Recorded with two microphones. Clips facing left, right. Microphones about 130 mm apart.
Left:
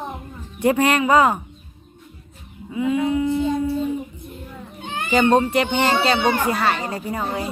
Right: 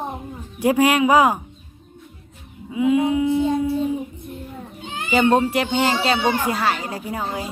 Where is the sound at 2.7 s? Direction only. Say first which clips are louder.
Right 2 dB; 10° right (ahead or behind).